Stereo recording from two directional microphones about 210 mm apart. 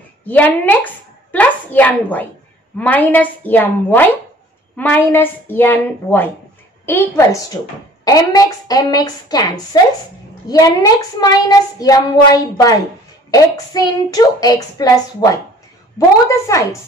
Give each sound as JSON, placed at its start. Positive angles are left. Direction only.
{"t": 0.3, "sound": "child singing", "side_deg": 10}